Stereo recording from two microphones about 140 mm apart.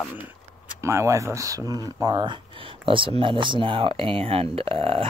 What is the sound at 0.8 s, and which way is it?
Speech, 20° right (ahead or behind).